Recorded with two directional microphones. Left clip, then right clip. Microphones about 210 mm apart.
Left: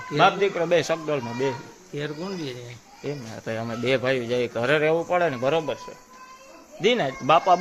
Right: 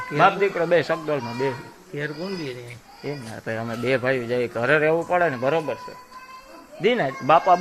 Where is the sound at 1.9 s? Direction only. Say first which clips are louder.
Right 2 dB; 25° left (ahead or behind).